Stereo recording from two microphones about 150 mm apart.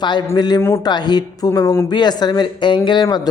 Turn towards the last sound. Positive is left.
turn(degrees=30)  # may be behind; listen again after turning